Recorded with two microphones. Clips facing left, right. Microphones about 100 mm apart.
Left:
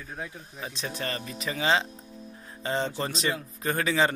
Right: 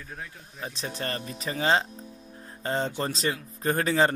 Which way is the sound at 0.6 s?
35° right (ahead or behind).